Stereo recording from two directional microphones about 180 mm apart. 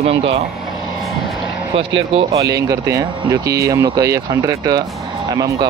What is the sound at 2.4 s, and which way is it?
Speech, 20° right (ahead or behind).